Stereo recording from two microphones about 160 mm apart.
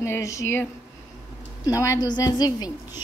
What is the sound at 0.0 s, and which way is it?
Speech, 20° left (ahead or behind).